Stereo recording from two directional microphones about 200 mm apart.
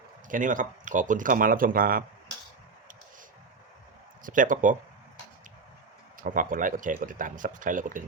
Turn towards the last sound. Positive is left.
turn(degrees=-40)  # may be behind; listen again after turning